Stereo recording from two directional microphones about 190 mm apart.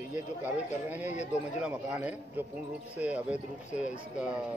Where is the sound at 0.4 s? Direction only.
10° right (ahead or behind).